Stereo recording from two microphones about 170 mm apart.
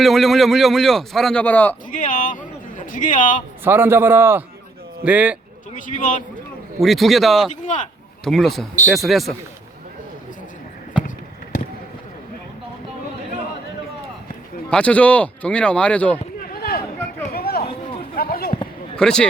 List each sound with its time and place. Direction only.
0.0 s a man's voice: centre (ahead or behind)
1.9 s a man's voice: 50° left (ahead or behind)
3.6 s a man's voice: 10° right (ahead or behind)
5.7 s a man's voice: 50° left (ahead or behind)
6.7 s a man's voice: centre (ahead or behind)
7.6 s a man's voice: 45° left (ahead or behind)
8.2 s a man's voice: centre (ahead or behind)
14.7 s a man's voice: 5° left (ahead or behind)
16.4 s a sound: 60° left (ahead or behind)
17.7 s a sound: 30° left (ahead or behind)
18.2 s a sound: 65° left (ahead or behind)
18.9 s a man's voice: 5° left (ahead or behind)